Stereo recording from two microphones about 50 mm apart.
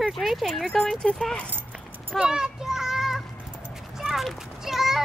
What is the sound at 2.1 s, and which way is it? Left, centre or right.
Children playing, centre.